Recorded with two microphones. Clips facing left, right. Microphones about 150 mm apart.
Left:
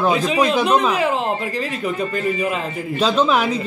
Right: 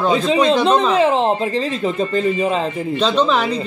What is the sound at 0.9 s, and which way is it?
Speech, 25° right (ahead or behind).